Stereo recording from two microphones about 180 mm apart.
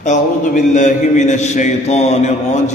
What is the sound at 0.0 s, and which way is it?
A man's voice, 45° left (ahead or behind).